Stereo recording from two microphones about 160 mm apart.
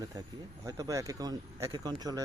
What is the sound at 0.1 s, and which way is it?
Speech, 20° right (ahead or behind).